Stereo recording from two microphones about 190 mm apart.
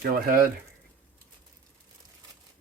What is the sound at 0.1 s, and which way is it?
Speech, 50° right (ahead or behind).